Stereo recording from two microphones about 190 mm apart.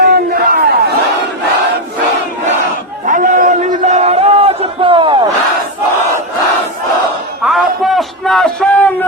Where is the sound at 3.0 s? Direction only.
40° right (ahead or behind); by 5.2 s 25° right (ahead or behind).